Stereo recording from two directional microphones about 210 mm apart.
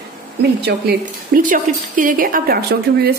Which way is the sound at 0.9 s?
40° right (ahead or behind).